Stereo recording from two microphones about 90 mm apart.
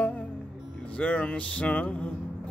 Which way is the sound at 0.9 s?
15° left (ahead or behind).